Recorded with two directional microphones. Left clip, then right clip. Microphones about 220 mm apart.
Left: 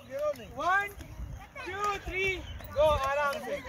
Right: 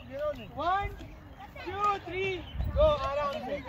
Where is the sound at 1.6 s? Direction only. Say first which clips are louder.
Right 3 dB; 15° left (ahead or behind).